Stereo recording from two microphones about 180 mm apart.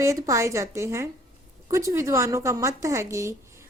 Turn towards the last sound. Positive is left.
turn(degrees=-15)  # may be behind; listen again after turning